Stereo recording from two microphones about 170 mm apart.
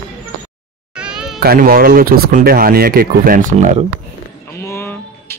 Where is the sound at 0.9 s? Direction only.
5° right (ahead or behind).